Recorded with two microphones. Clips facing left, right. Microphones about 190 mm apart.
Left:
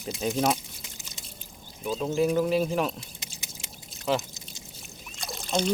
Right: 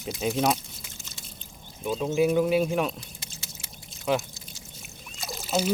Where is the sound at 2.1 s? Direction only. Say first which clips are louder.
Right 2 dB; 5° right (ahead or behind).